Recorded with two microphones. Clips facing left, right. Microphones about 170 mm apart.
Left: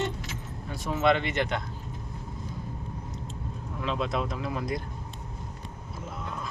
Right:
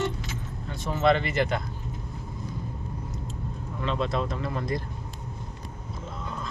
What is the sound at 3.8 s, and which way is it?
Speech, 5° left (ahead or behind).